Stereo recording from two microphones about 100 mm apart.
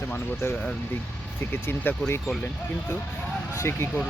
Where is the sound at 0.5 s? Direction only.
10° left (ahead or behind).